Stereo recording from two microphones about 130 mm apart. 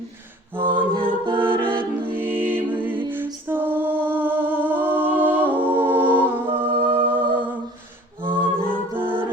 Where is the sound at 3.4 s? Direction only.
15° right (ahead or behind).